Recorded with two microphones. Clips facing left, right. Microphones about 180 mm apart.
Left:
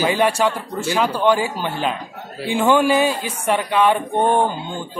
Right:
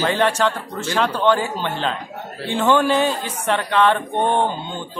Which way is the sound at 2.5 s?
10° left (ahead or behind).